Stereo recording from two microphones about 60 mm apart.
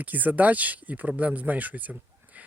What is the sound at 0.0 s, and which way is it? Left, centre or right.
Speech, right.